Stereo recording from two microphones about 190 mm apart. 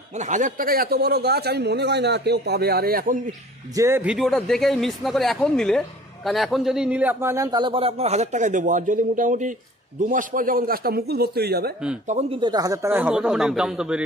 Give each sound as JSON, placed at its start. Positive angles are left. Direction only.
{"t": 0.1, "sound": "a man's voice", "side_deg": -40}
{"t": 3.7, "sound": "speech", "side_deg": -15}
{"t": 12.1, "sound": "speech", "side_deg": -30}